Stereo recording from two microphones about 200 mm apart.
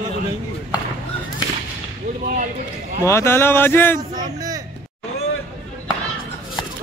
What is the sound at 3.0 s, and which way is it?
Speech, 15° left (ahead or behind).